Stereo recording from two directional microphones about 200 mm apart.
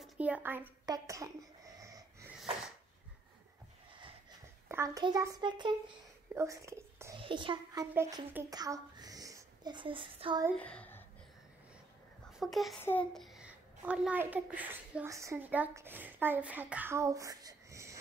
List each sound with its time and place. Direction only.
0.0 s speech: 5° right (ahead or behind)
1.8 s wheeze: 15° right (ahead or behind)
4.6 s a child's voice: 15° right (ahead or behind)
7.2 s speech: 25° right (ahead or behind)
10.6 s a sound: 5° left (ahead or behind)
12.4 s a child's voice: centre (ahead or behind)